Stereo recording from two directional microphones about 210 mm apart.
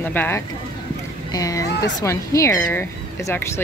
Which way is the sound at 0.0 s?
10° left (ahead or behind).